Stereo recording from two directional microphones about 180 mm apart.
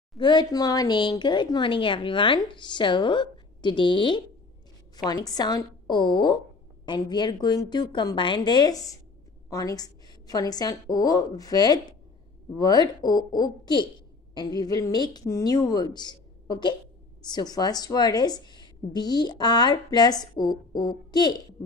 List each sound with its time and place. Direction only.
0.2 s a woman's voice: 25° left (ahead or behind)